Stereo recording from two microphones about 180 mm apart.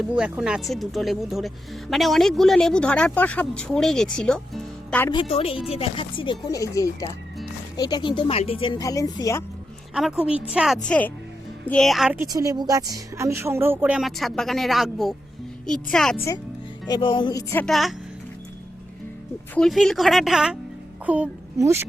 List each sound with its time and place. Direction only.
0.0 s speech: 5° right (ahead or behind)
5.3 s speech: 35° left (ahead or behind)
6.5 s speech: 20° left (ahead or behind)
9.9 s speech: 5° right (ahead or behind)
12.1 s speech: 20° right (ahead or behind); by 16.2 s 5° left (ahead or behind)
16.8 s speech: 25° left (ahead or behind)
17.7 s speech: centre (ahead or behind)
19.5 s a child's voice: centre (ahead or behind)